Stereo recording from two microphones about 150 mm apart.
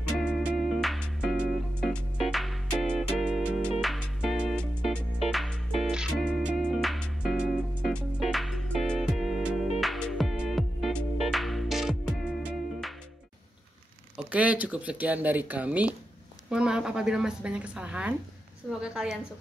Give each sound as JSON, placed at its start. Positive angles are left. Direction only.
{"t": 0.2, "sound": "music", "side_deg": -5}
{"t": 1.8, "sound": "music", "side_deg": 5}
{"t": 14.1, "sound": "a woman's voice", "side_deg": -10}